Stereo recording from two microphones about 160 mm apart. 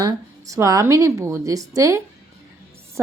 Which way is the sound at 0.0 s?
20° right (ahead or behind).